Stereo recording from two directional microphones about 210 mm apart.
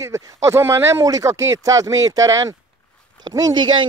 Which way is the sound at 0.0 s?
15° right (ahead or behind).